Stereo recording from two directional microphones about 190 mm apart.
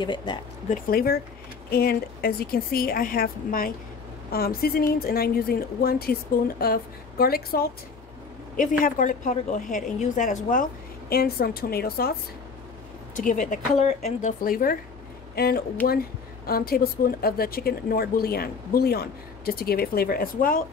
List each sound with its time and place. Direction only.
0.0 s speech: 25° left (ahead or behind)
0.7 s a woman's voice: 50° left (ahead or behind)
13.1 s a woman's voice: 45° left (ahead or behind)
14.4 s a woman's voice: 50° left (ahead or behind)